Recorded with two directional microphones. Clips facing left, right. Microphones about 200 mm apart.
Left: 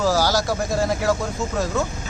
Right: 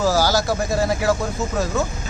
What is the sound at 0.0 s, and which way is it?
Speech, centre (ahead or behind).